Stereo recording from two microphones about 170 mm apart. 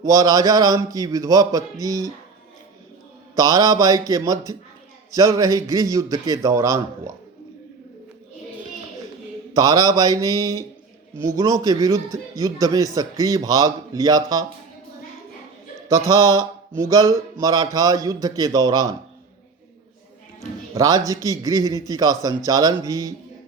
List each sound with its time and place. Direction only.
0.0 s a man's voice: 20° right (ahead or behind)
3.3 s a man's voice: 20° right (ahead or behind)
9.6 s a man's voice: 20° right (ahead or behind)
16.0 s a man's voice: 15° right (ahead or behind)
20.7 s a man's voice: 20° right (ahead or behind)